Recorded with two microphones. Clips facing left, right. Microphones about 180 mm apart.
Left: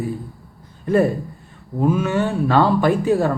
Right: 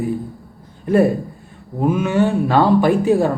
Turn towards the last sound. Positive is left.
turn(degrees=-15)  # may be behind; listen again after turning